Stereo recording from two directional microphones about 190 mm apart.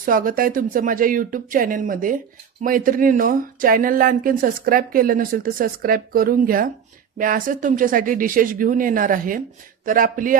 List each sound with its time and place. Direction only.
0.0 s speech: 45° right (ahead or behind)